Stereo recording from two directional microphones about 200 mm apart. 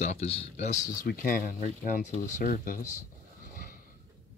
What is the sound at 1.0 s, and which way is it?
Speech, 45° left (ahead or behind).